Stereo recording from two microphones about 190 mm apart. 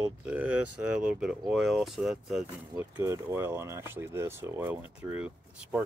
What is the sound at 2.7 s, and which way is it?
Speech, 15° right (ahead or behind).